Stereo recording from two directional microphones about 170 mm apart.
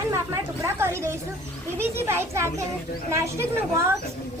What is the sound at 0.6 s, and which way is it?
A woman's voice, 15° right (ahead or behind).